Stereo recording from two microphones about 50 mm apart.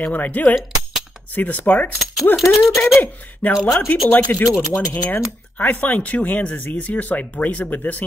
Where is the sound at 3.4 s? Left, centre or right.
Left.